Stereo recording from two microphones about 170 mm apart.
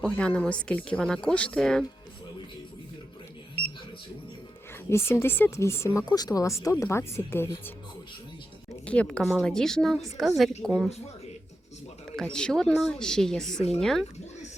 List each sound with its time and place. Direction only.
0.0 s speech: 5° left (ahead or behind)
4.9 s speech: 15° left (ahead or behind)
8.9 s speech: 5° left (ahead or behind)
12.1 s speech: 5° left (ahead or behind)